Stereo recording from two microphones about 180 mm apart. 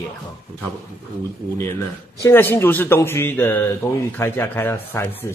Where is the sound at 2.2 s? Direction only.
10° left (ahead or behind).